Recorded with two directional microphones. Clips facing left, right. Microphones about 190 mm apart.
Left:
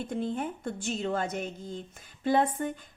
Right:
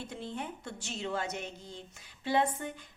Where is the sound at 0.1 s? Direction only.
50° left (ahead or behind).